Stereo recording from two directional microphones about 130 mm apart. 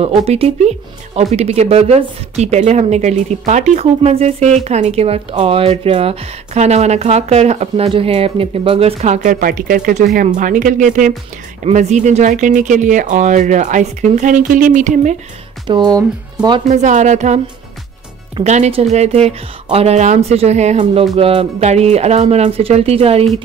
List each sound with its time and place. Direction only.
0.0 s speech: 50° right (ahead or behind); by 11.1 s 70° right (ahead or behind)
11.6 s speech: 60° right (ahead or behind)
15.6 s speech: 35° right (ahead or behind)
16.6 s speech: 65° right (ahead or behind)
18.4 s speech: 60° right (ahead or behind)
20.8 s speech: 50° right (ahead or behind)